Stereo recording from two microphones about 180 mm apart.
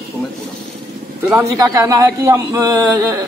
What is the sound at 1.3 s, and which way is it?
A man's voice, 15° right (ahead or behind).